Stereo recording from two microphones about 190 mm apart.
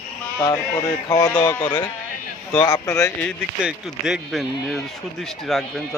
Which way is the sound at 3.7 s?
5° right (ahead or behind).